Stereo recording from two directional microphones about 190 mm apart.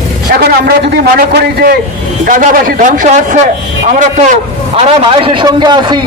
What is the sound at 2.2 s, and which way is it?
A man's voice, 45° right (ahead or behind).